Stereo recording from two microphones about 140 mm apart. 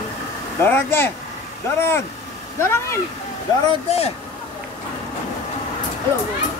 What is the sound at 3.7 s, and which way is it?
Speech, 45° left (ahead or behind).